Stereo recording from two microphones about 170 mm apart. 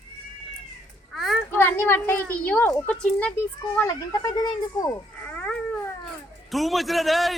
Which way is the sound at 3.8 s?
20° left (ahead or behind).